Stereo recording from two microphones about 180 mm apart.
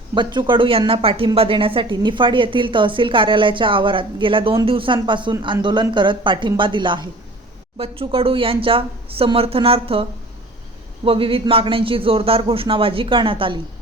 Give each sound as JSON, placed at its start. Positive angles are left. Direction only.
{"t": 0.1, "sound": "speech", "side_deg": -25}